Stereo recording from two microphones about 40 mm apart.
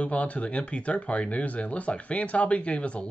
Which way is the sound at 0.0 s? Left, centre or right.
Left.